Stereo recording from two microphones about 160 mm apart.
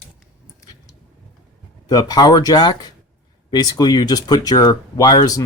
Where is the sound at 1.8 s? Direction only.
25° left (ahead or behind).